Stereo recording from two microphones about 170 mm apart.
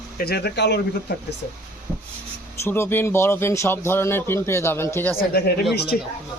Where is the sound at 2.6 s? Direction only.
15° left (ahead or behind).